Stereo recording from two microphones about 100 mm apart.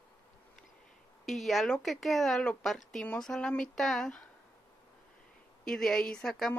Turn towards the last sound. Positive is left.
turn(degrees=5)  # may be behind; listen again after turning